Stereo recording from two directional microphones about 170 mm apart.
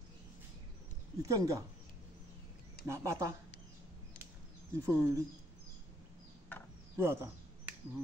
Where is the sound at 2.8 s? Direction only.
15° right (ahead or behind).